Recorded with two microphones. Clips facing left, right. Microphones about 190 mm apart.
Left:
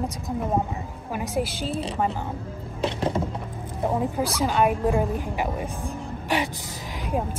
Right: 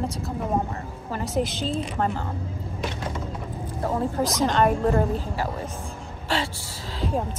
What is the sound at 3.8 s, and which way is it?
A woman's voice, 15° left (ahead or behind).